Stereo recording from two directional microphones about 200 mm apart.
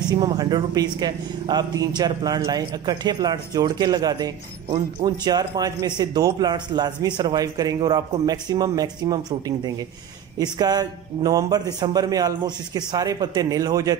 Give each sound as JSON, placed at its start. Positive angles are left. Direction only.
{"t": 0.1, "sound": "speech", "side_deg": -20}